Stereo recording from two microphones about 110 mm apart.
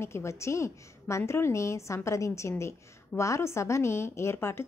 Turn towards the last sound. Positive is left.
turn(degrees=25)  # may be behind; listen again after turning